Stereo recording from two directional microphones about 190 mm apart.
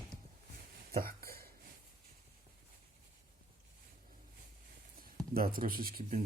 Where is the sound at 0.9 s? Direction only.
50° right (ahead or behind).